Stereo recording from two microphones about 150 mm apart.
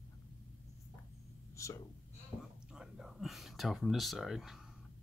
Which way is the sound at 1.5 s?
20° left (ahead or behind).